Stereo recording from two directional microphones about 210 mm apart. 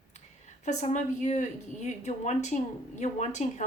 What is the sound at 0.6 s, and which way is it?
Speech, 35° left (ahead or behind).